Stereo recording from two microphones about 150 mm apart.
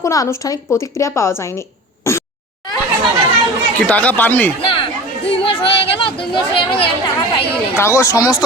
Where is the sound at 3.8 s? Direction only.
10° left (ahead or behind).